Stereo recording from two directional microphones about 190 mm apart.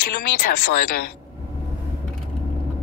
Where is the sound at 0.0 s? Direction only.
50° left (ahead or behind).